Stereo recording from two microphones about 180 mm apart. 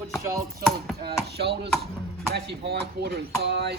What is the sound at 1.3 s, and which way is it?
Speech, 70° right (ahead or behind).